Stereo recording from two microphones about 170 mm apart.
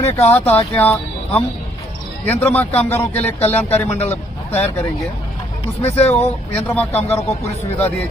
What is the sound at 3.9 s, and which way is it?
Speech, 40° left (ahead or behind).